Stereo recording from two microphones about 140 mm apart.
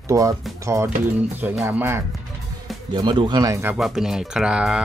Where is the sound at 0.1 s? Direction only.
25° right (ahead or behind).